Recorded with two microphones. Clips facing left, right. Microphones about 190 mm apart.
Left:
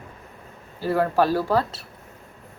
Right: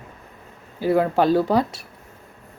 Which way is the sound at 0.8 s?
15° right (ahead or behind).